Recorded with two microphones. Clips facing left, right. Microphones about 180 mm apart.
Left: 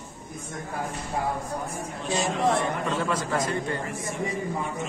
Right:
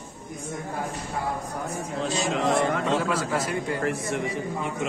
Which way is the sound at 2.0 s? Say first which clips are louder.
Left 1 dB; 90° right.